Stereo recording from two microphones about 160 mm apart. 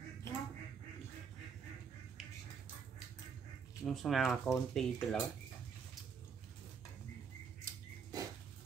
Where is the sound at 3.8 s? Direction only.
Centre (ahead or behind).